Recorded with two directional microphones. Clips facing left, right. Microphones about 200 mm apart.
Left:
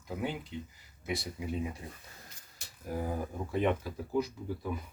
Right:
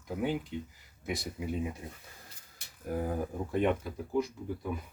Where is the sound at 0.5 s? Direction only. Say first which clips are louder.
Right 3 dB; 55° right (ahead or behind).